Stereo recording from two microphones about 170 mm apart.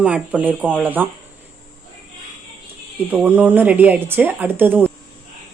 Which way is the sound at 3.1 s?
10° right (ahead or behind).